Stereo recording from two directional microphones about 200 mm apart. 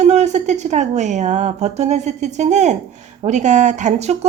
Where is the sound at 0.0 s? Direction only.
35° right (ahead or behind).